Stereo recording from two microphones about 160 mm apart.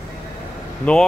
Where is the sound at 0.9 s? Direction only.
5° left (ahead or behind).